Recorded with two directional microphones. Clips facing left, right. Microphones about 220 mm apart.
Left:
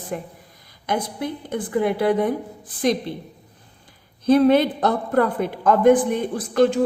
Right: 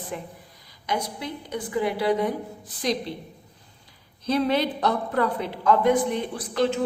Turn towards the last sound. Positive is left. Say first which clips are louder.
# left 6 dB
turn(degrees=50)  # may be behind; listen again after turning